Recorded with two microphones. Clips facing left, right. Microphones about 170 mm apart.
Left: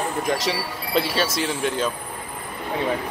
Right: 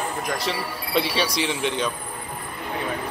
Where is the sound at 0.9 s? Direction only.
Centre (ahead or behind).